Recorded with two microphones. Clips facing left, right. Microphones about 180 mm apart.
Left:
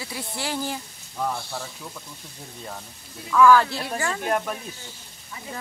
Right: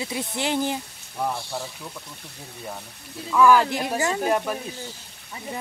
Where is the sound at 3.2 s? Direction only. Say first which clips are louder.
Left 1 dB; 20° right (ahead or behind).